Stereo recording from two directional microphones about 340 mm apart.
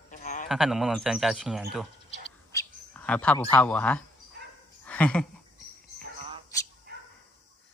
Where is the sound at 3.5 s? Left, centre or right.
Centre.